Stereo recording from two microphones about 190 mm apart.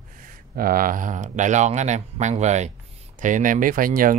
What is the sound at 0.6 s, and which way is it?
Speech, 50° right (ahead or behind).